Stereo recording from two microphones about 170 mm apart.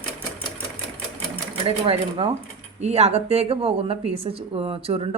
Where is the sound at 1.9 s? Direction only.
35° right (ahead or behind).